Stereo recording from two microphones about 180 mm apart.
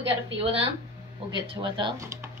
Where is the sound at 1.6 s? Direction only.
25° right (ahead or behind).